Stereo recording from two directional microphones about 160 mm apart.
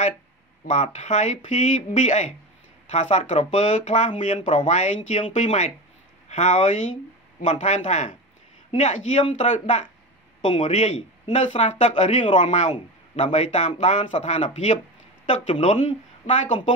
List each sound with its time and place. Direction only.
0.7 s speech: 45° left (ahead or behind)
12.6 s speech: 35° left (ahead or behind)